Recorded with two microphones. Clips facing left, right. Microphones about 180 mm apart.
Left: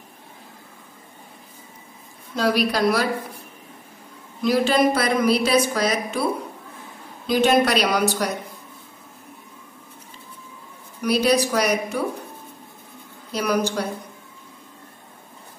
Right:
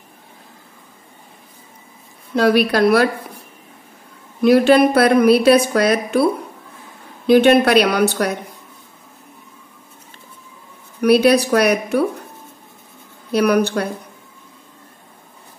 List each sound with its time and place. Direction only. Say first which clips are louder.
2.3 s a woman's voice: right 6 dB; 60° right (ahead or behind)
4.4 s a woman's voice: right 7 dB; 60° right (ahead or behind)
7.2 s a woman's voice: right 7 dB; 60° right (ahead or behind)
11.0 s a woman's voice: right 7 dB; 60° right (ahead or behind)
13.3 s a woman's voice: right 7 dB; 65° right (ahead or behind)